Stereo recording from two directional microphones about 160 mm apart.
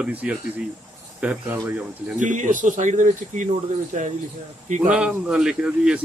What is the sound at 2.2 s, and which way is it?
Speech, 50° right (ahead or behind).